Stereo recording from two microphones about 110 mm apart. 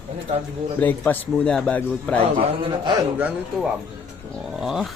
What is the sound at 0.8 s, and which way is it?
Speech, 15° left (ahead or behind).